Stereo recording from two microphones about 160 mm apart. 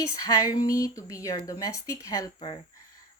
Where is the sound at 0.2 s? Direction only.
20° left (ahead or behind).